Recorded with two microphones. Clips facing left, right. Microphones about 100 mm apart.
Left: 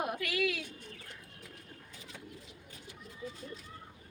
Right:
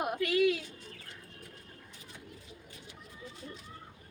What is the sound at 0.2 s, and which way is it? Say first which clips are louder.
Speech: right 6 dB; 25° right (ahead or behind).